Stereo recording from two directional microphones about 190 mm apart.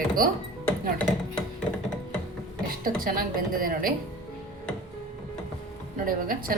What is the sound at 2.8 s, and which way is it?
A woman's voice, 50° right (ahead or behind).